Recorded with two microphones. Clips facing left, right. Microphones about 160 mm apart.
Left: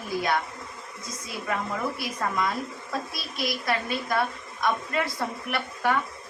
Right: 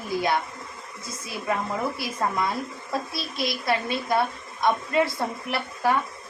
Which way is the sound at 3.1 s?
25° right (ahead or behind).